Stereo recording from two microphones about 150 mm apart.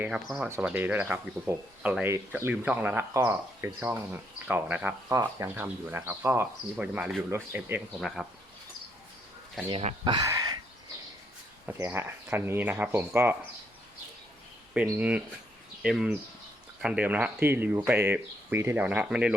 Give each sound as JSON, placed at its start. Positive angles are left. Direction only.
{"t": 0.0, "sound": "speech", "side_deg": -10}
{"t": 10.0, "sound": "speech", "side_deg": -30}
{"t": 10.2, "sound": "a sound", "side_deg": -20}
{"t": 11.6, "sound": "speech", "side_deg": -10}
{"t": 14.8, "sound": "speech", "side_deg": -10}